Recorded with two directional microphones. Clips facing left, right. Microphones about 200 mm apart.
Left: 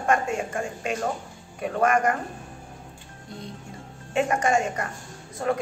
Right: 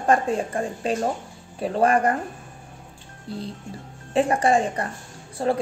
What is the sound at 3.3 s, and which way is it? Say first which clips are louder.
A woman's voice: right 6 dB; 30° right (ahead or behind).